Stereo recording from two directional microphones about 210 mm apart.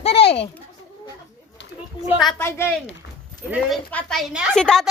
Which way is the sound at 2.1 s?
Centre (ahead or behind).